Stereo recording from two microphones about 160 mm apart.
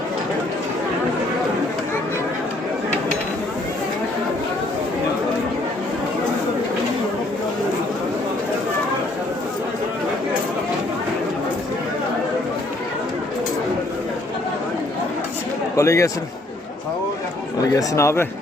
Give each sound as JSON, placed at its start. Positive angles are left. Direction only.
{"t": 15.7, "sound": "a man's voice", "side_deg": 20}
{"t": 17.7, "sound": "a man's voice", "side_deg": 20}